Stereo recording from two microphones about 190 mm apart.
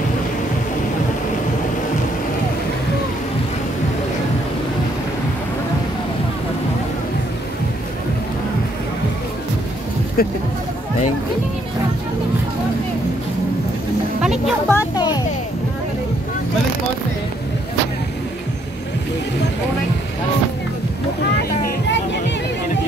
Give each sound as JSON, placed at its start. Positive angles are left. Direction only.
{"t": 10.2, "sound": "speech", "side_deg": 50}
{"t": 14.2, "sound": "music", "side_deg": -5}
{"t": 14.7, "sound": "music", "side_deg": 20}